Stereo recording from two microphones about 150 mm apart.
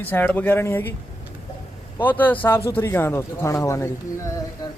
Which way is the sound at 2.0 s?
10° left (ahead or behind).